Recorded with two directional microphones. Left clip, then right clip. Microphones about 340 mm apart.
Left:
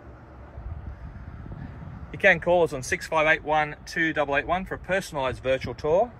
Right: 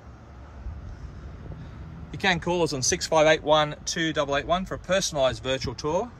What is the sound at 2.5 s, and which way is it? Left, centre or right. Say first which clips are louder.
Speech: left 3 dB; centre.